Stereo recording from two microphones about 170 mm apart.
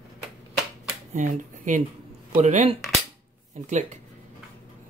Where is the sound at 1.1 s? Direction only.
45° right (ahead or behind).